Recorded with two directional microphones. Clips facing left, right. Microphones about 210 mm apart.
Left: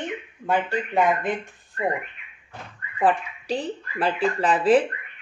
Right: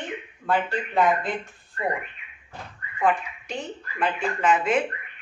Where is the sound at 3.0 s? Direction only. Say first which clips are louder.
Left 2 dB; 35° left (ahead or behind).